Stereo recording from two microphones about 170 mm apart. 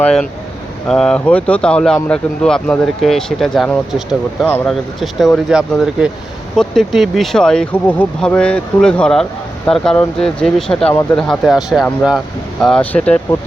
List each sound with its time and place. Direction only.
0.0 s speech: 5° left (ahead or behind)
4.4 s speech: 10° left (ahead or behind)
4.7 s speech: centre (ahead or behind)